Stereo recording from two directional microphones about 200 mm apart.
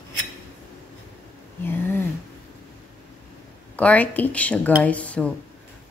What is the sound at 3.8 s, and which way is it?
A woman's voice, 5° left (ahead or behind).